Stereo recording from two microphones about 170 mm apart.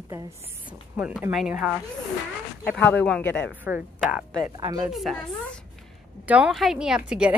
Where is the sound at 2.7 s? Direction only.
10° left (ahead or behind).